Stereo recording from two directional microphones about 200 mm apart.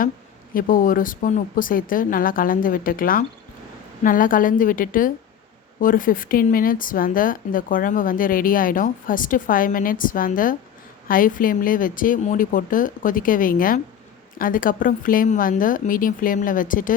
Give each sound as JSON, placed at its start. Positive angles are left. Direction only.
{"t": 0.5, "sound": "speech", "side_deg": 45}